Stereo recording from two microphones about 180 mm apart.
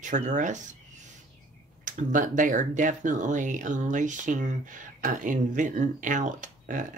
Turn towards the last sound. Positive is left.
turn(degrees=-45)  # may be behind; listen again after turning